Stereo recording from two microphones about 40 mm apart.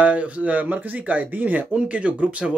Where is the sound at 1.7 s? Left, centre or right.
Right.